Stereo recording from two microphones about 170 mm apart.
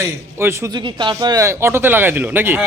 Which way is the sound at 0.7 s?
25° right (ahead or behind).